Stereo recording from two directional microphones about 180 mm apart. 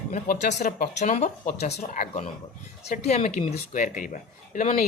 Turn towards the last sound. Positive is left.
turn(degrees=45)  # may be behind; listen again after turning